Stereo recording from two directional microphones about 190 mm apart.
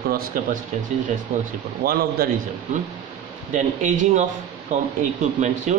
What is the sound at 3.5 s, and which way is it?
Speech, 40° right (ahead or behind).